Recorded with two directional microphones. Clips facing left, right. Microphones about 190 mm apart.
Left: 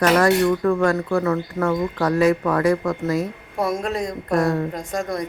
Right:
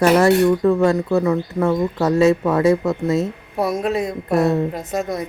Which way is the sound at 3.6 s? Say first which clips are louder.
Right 3 dB; centre (ahead or behind).